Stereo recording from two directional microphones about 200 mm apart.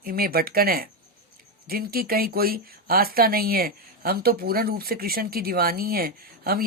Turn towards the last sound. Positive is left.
turn(degrees=-50)  # may be behind; listen again after turning